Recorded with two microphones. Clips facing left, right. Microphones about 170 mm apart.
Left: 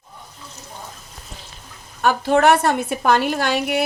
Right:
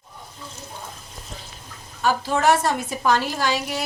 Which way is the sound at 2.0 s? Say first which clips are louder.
Left 5 dB; 60° left (ahead or behind).